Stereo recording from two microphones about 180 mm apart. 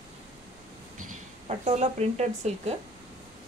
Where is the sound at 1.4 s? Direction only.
35° right (ahead or behind).